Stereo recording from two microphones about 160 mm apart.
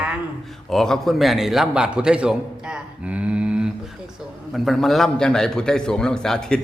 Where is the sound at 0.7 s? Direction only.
Centre (ahead or behind).